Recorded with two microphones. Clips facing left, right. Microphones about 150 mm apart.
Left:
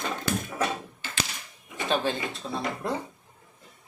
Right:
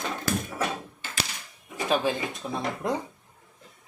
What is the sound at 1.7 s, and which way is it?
Speech, 10° right (ahead or behind).